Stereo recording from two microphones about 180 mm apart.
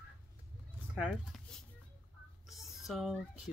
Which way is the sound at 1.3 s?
5° left (ahead or behind).